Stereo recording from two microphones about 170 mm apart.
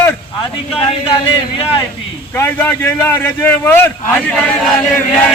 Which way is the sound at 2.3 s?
10° left (ahead or behind).